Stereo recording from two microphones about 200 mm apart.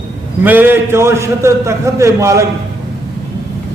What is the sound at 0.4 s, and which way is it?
A man's voice, 10° right (ahead or behind).